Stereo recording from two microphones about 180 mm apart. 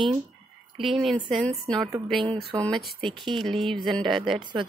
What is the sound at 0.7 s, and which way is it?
A woman's voice, centre (ahead or behind).